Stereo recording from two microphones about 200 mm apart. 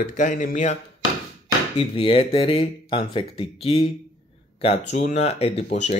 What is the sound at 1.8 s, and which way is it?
Speech, 30° left (ahead or behind).